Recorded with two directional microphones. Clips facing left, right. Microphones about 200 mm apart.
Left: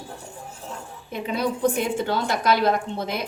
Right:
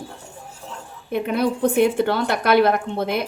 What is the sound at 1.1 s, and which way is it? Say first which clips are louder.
A woman's voice: right 5 dB; 60° right (ahead or behind).